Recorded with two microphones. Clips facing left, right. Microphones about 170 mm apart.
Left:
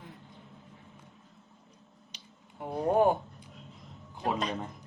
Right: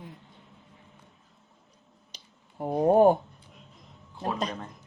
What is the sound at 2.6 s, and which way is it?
Speech, 40° right (ahead or behind).